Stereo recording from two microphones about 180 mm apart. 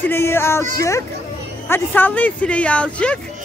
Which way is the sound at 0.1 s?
15° left (ahead or behind).